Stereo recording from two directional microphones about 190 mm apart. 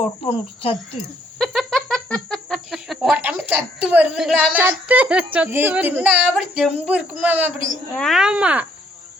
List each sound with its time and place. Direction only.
0.2 s speech: 30° left (ahead or behind)
1.4 s a sound: centre (ahead or behind)
7.9 s speech: centre (ahead or behind)